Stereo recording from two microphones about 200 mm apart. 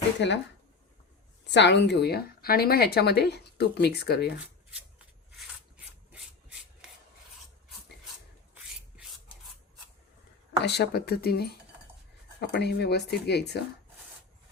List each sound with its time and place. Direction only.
0.2 s speech: 60° left (ahead or behind)
1.5 s a woman's voice: 60° left (ahead or behind)
4.9 s rub: 5° right (ahead or behind)
10.6 s a woman's voice: 55° left (ahead or behind)